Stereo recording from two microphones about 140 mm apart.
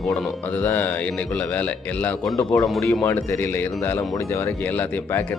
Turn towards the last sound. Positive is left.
turn(degrees=15)  # may be behind; listen again after turning